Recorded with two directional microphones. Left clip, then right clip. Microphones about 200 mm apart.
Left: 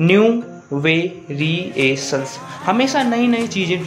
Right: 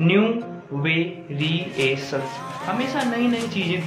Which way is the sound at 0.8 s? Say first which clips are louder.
Left 6 dB; 40° left (ahead or behind).